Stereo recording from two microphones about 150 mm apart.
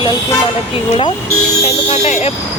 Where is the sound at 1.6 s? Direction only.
50° left (ahead or behind).